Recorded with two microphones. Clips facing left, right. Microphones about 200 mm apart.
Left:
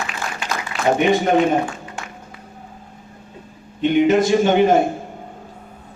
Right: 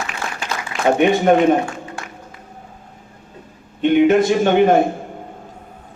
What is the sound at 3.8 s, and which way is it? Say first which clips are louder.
Speech: right 2 dB; 55° right (ahead or behind).